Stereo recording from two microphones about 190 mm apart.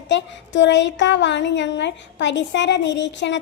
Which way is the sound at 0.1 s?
70° left (ahead or behind).